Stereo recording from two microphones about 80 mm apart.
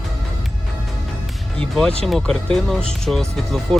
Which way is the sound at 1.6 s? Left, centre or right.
Centre.